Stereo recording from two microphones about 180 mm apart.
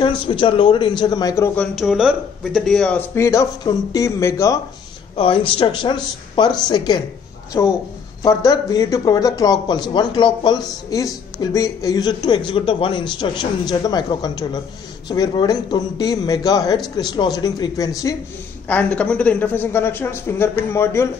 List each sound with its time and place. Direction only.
0.0 s speech: 30° left (ahead or behind)
5.1 s speech: 30° left (ahead or behind)
18.7 s speech: 10° left (ahead or behind)